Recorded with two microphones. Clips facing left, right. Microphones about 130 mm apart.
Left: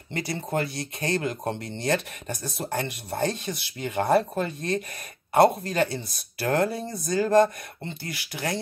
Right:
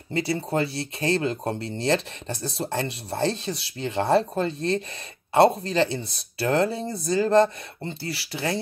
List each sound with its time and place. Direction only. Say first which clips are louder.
0.1 s speech: right 3 dB; 30° right (ahead or behind)